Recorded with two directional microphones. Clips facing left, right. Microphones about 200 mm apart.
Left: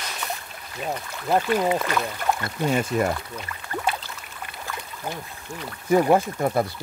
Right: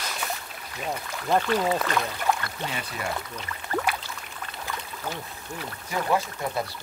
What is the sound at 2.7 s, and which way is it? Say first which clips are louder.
Speech: left 12 dB; 45° left (ahead or behind).